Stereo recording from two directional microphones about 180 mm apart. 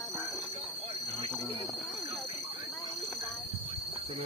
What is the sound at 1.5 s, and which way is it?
Speech, 30° right (ahead or behind).